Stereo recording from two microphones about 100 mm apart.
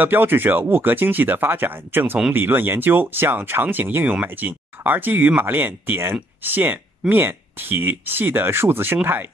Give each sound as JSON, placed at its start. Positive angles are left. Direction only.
{"t": 0.0, "sound": "speech", "side_deg": -20}